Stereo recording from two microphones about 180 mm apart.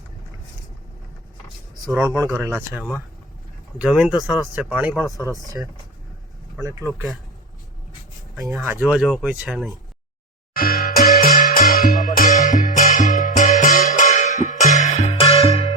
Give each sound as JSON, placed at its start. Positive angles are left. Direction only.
{"t": 2.0, "sound": "speech", "side_deg": -15}
{"t": 6.6, "sound": "speech", "side_deg": -15}
{"t": 8.8, "sound": "speech", "side_deg": 0}
{"t": 10.5, "sound": "music", "side_deg": 55}